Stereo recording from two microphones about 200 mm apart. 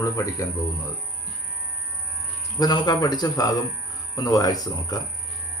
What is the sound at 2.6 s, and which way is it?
Speech, 20° left (ahead or behind).